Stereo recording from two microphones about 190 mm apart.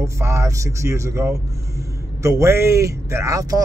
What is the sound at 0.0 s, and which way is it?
A man's voice, 15° right (ahead or behind).